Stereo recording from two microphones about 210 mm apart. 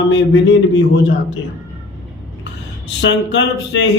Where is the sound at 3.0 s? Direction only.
60° left (ahead or behind).